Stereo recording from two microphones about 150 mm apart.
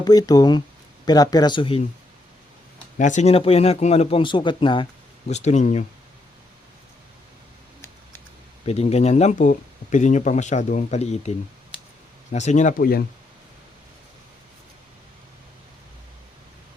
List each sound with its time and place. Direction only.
0.0 s speech: 25° left (ahead or behind)
3.0 s a man's voice: 50° left (ahead or behind); by 4.9 s 35° left (ahead or behind)
5.3 s speech: 50° left (ahead or behind)
8.6 s speech: 45° left (ahead or behind)